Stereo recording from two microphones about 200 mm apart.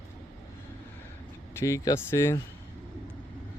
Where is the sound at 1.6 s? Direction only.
15° left (ahead or behind).